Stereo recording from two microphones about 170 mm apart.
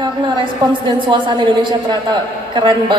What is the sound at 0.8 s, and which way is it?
A woman's voice, 30° right (ahead or behind).